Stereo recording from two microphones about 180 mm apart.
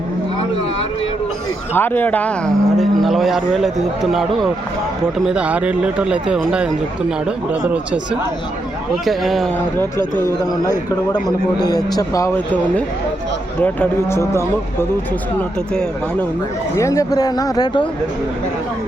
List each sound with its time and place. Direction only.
1.7 s speech: 10° left (ahead or behind); by 6.7 s 5° right (ahead or behind)
9.0 s speech: centre (ahead or behind)
11.6 s speech: 20° left (ahead or behind)
13.6 s speech: 10° left (ahead or behind)
16.7 s speech: 15° left (ahead or behind)